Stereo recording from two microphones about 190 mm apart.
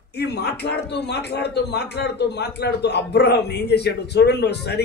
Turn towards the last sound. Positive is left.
turn(degrees=60)  # may be behind; listen again after turning